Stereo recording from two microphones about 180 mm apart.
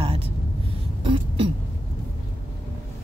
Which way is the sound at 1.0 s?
30° right (ahead or behind).